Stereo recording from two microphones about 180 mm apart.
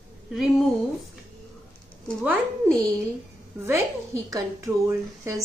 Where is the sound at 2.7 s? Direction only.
20° right (ahead or behind).